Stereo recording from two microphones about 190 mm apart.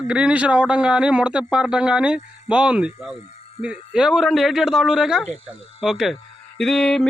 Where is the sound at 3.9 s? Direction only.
5° right (ahead or behind).